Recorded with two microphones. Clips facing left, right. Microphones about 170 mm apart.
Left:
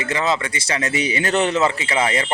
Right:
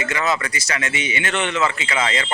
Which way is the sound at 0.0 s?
30° left (ahead or behind).